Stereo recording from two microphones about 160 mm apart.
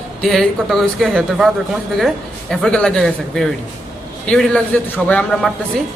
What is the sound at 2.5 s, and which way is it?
A man's voice, 5° left (ahead or behind).